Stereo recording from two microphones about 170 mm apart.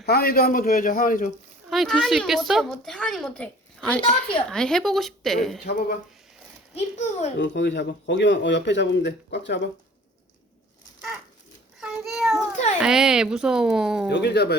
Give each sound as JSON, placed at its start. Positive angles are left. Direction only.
{"t": 0.0, "sound": "a man's voice", "side_deg": 65}
{"t": 1.7, "sound": "a woman's voice", "side_deg": 0}
{"t": 4.0, "sound": "a child's voice", "side_deg": 30}
{"t": 4.4, "sound": "a woman's voice", "side_deg": 5}
{"t": 5.6, "sound": "speech", "side_deg": 70}
{"t": 6.7, "sound": "a child's voice", "side_deg": 40}
{"t": 7.3, "sound": "a man's voice", "side_deg": 90}
{"t": 11.8, "sound": "a sound", "side_deg": -5}
{"t": 12.8, "sound": "a woman's voice", "side_deg": -5}
{"t": 14.1, "sound": "speech", "side_deg": 80}